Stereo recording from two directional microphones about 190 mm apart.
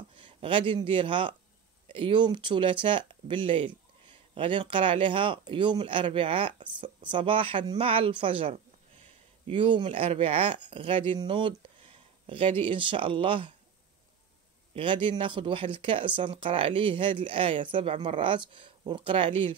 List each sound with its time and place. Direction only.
0.2 s a man's voice: 25° right (ahead or behind)
14.7 s speech: 25° right (ahead or behind)